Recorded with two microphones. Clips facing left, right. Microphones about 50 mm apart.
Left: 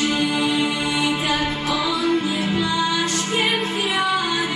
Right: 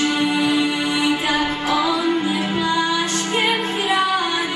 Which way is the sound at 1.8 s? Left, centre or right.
Centre.